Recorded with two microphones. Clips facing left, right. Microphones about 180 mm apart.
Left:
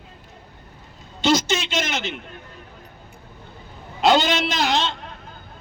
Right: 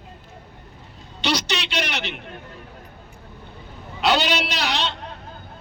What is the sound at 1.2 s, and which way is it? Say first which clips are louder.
Speech: left 5 dB; 45° left (ahead or behind).